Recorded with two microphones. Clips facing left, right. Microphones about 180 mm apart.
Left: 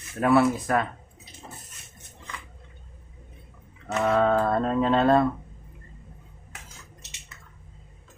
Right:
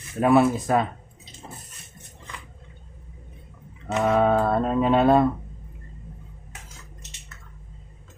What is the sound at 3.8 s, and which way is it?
Speech, 10° right (ahead or behind).